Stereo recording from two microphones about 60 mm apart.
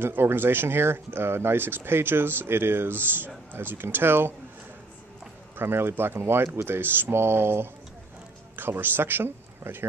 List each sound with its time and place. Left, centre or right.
0.0 s speech: right
5.6 s speech: right